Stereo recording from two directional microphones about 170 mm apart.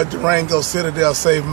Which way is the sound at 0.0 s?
10° right (ahead or behind).